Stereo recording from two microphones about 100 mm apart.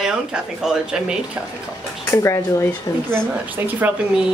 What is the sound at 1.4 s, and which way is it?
Speech, 20° right (ahead or behind).